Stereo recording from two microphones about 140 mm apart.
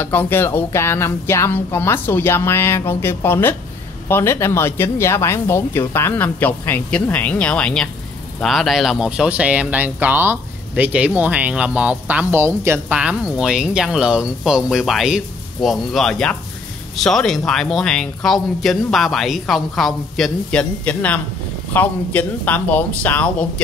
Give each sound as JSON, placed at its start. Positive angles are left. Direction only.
{"t": 0.0, "sound": "speech", "side_deg": 15}